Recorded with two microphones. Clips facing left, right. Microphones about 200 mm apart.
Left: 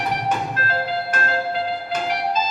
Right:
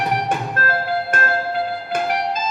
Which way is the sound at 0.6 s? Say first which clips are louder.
Right 4 dB; 50° right (ahead or behind).